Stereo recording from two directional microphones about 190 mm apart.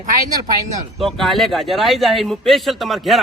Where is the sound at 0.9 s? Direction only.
Centre (ahead or behind).